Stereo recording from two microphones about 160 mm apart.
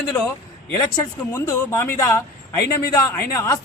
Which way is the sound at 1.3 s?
20° left (ahead or behind).